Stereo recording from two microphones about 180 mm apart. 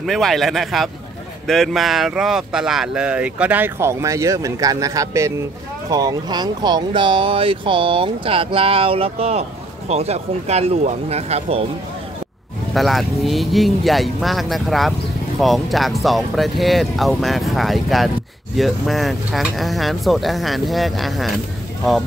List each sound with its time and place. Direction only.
0.0 s speech: centre (ahead or behind); by 11.6 s 35° right (ahead or behind)
12.7 s speech: centre (ahead or behind)